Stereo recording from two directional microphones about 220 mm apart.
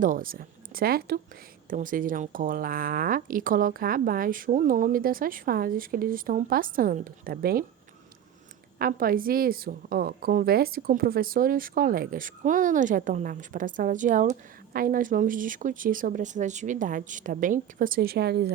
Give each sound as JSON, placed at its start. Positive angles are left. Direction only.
{"t": 0.0, "sound": "a woman's voice", "side_deg": -40}
{"t": 8.8, "sound": "a woman's voice", "side_deg": -40}